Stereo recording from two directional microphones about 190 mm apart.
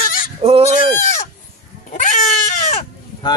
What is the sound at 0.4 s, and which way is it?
Goose, 30° right (ahead or behind).